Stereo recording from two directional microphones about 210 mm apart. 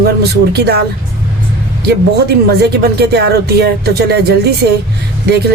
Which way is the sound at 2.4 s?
50° right (ahead or behind).